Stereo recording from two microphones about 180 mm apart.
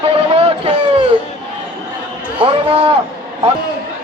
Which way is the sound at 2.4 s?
30° right (ahead or behind).